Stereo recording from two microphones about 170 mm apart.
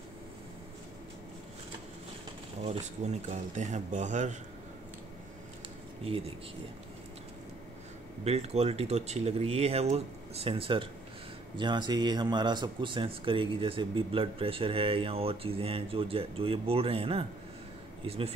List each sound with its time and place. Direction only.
2.6 s a man's voice: 40° right (ahead or behind)
8.2 s speech: 40° right (ahead or behind)